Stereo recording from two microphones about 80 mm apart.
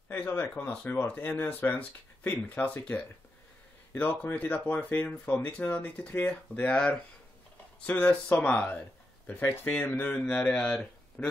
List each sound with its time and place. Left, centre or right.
0.1 s speech: left